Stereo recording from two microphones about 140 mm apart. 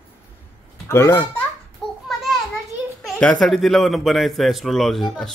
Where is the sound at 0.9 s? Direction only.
20° left (ahead or behind).